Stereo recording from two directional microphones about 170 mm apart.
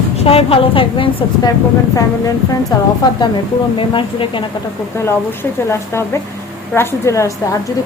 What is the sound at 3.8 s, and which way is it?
Speech, 30° left (ahead or behind).